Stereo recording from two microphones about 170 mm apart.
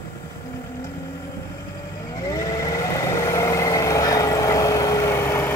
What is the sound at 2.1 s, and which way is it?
Vehicle, 20° left (ahead or behind).